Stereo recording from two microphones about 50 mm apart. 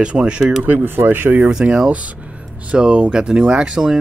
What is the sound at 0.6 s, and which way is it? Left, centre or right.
Speech, right.